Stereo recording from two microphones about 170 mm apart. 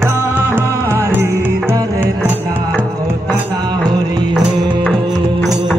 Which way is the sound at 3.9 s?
25° right (ahead or behind).